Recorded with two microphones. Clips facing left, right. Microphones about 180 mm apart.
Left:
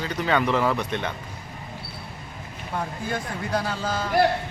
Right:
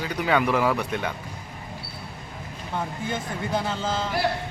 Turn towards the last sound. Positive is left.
turn(degrees=-20)  # may be behind; listen again after turning